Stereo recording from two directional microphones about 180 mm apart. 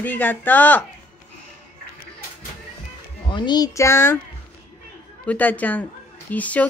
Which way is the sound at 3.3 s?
25° left (ahead or behind).